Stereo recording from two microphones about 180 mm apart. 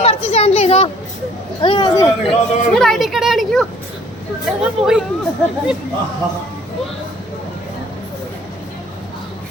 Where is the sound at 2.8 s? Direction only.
Centre (ahead or behind).